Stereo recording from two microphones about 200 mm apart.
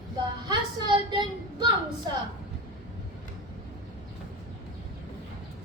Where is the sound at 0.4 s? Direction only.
20° right (ahead or behind).